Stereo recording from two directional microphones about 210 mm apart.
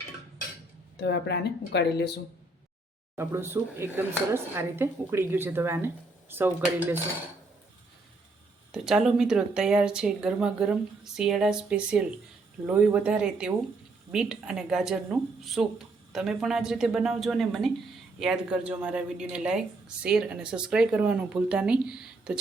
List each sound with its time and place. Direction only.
0.9 s speech: 55° left (ahead or behind)
3.2 s speech: 10° right (ahead or behind)
8.7 s a woman's voice: centre (ahead or behind)